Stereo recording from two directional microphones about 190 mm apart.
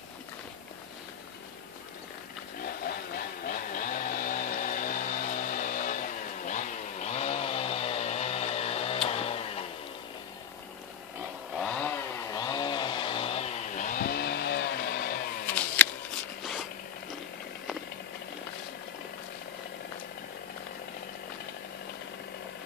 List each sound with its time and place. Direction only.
2.6 s chainsaw: 50° left (ahead or behind); by 9.7 s 30° left (ahead or behind)
11.5 s chainsaw: 5° left (ahead or behind)
12.4 s chainsaw: 20° left (ahead or behind); by 15.2 s 55° left (ahead or behind)
15.4 s a sound: 10° left (ahead or behind)